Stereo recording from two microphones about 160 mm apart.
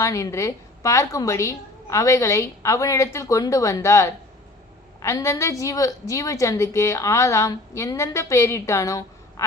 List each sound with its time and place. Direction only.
0.0 s a woman's voice: 20° left (ahead or behind)